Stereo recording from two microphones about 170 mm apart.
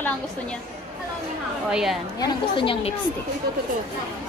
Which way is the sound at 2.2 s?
30° left (ahead or behind).